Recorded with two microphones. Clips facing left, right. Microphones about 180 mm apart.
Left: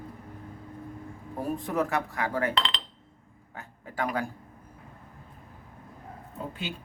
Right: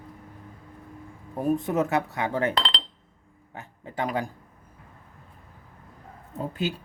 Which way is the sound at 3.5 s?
20° right (ahead or behind).